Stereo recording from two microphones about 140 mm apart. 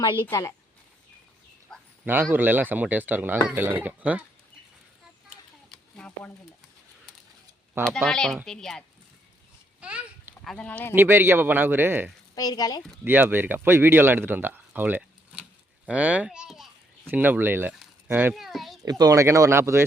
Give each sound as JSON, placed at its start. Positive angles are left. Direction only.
{"t": 0.0, "sound": "a woman's voice", "side_deg": 30}
{"t": 1.7, "sound": "a sound", "side_deg": 5}
{"t": 2.3, "sound": "speech", "side_deg": -15}
{"t": 5.6, "sound": "a sound", "side_deg": 5}
{"t": 7.9, "sound": "a child's voice", "side_deg": 0}
{"t": 9.8, "sound": "a sound", "side_deg": -10}
{"t": 10.4, "sound": "speech", "side_deg": 5}
{"t": 10.9, "sound": "speech", "side_deg": -15}
{"t": 12.3, "sound": "a woman's voice", "side_deg": 25}
{"t": 13.1, "sound": "speech", "side_deg": -15}
{"t": 18.3, "sound": "a child's voice", "side_deg": 0}
{"t": 18.9, "sound": "speech", "side_deg": -25}